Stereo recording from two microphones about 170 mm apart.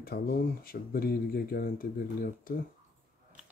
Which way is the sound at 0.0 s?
65° left (ahead or behind).